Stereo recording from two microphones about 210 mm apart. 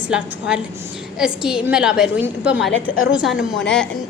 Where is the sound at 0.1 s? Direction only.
5° right (ahead or behind).